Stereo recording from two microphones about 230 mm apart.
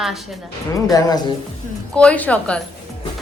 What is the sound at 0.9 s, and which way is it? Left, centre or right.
Speech, centre.